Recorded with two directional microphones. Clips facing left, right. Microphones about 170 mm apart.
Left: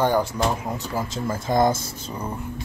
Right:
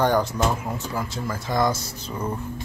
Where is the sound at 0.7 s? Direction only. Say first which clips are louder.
Left 1 dB; 20° left (ahead or behind).